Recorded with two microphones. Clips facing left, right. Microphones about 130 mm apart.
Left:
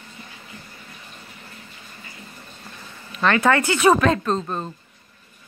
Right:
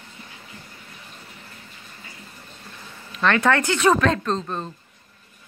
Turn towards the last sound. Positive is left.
turn(degrees=5)  # may be behind; listen again after turning